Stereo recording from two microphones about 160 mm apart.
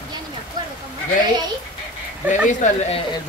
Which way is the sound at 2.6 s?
45° left (ahead or behind).